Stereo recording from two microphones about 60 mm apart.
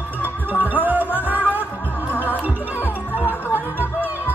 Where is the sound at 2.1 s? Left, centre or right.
Left.